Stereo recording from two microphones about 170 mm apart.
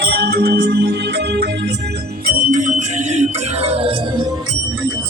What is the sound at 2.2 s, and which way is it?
Music, 55° right (ahead or behind).